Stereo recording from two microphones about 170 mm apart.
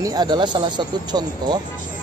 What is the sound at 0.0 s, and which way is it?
Speech, 25° right (ahead or behind).